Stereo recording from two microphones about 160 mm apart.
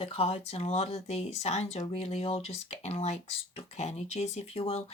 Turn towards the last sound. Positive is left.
turn(degrees=40)  # may be behind; listen again after turning